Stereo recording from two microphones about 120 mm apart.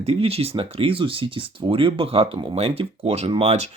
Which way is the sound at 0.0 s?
55° right (ahead or behind).